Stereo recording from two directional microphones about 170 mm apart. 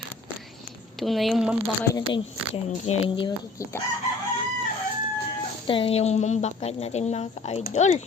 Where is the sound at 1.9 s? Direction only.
30° left (ahead or behind).